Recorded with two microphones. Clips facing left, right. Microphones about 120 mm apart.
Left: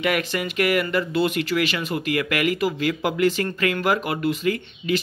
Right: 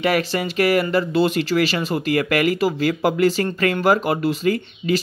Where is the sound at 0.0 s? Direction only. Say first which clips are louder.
Right 3 dB; 35° right (ahead or behind).